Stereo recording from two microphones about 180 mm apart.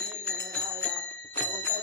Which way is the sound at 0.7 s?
10° left (ahead or behind).